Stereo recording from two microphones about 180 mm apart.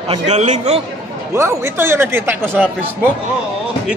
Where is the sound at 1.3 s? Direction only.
15° right (ahead or behind).